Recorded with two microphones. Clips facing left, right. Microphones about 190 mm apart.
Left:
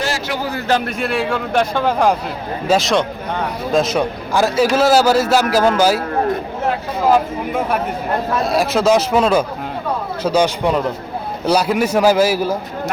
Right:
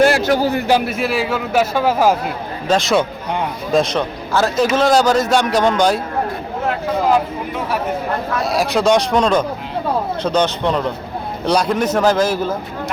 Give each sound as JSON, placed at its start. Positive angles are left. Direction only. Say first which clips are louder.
{"t": 0.0, "sound": "a sound", "louder": "right 9 dB", "side_deg": -55}
{"t": 0.7, "sound": "a man's voice", "louder": "right 2 dB", "side_deg": -5}
{"t": 8.4, "sound": "a man's voice", "louder": "even", "side_deg": 0}